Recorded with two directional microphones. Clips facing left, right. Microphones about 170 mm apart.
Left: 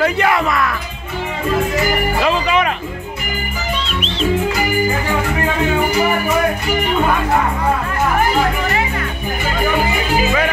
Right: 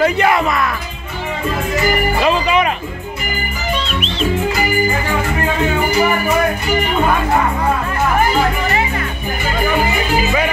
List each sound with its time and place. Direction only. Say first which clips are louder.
0.0 s music: right 2 dB; 20° right (ahead or behind)
2.2 s music: right 2 dB; 15° right (ahead or behind)